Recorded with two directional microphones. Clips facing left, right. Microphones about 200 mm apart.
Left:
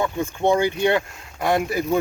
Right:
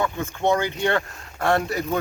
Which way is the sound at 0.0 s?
15° left (ahead or behind).